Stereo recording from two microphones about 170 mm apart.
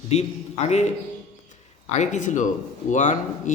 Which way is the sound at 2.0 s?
45° left (ahead or behind).